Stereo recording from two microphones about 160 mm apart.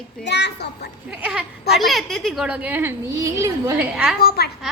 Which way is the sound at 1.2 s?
10° right (ahead or behind).